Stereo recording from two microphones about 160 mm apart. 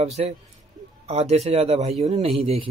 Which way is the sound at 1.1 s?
40° right (ahead or behind).